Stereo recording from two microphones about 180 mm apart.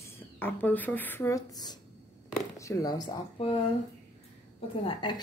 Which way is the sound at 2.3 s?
15° left (ahead or behind).